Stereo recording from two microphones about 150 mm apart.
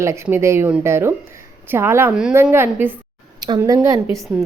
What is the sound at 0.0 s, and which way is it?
A woman's voice, 20° right (ahead or behind).